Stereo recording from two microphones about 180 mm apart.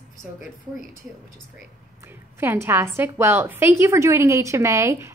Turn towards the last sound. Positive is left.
turn(degrees=-15)  # may be behind; listen again after turning